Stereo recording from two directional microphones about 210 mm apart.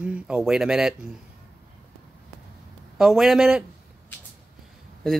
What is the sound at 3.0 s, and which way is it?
Speech, centre (ahead or behind).